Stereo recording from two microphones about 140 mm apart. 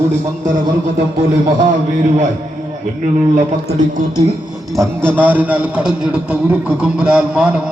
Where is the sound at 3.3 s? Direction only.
60° right (ahead or behind).